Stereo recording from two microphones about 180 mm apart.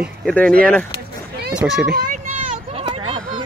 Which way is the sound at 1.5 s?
5° right (ahead or behind).